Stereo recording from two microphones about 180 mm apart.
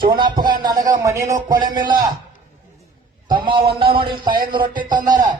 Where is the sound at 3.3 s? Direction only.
25° right (ahead or behind).